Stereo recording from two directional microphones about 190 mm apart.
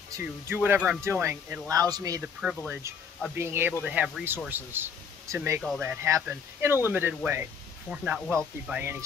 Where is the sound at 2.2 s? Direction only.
5° right (ahead or behind).